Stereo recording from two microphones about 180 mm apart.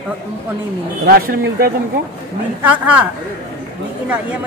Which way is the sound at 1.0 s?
55° right (ahead or behind).